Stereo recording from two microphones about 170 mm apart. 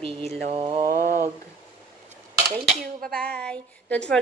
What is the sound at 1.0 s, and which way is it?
Speech, 50° right (ahead or behind).